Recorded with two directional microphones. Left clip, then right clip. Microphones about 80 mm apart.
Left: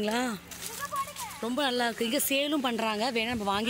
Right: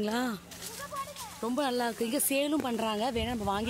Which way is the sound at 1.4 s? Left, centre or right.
Centre.